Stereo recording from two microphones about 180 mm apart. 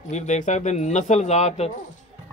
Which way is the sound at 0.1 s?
40° left (ahead or behind).